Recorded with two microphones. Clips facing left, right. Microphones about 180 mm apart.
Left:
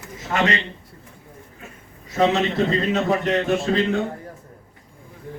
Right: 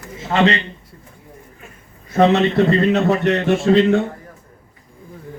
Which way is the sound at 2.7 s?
65° right (ahead or behind).